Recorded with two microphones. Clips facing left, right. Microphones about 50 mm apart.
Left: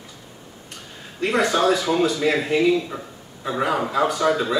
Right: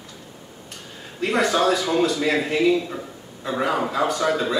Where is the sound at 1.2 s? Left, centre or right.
Centre.